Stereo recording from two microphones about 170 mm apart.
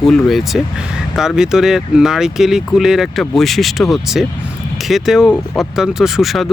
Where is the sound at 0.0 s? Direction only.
Centre (ahead or behind).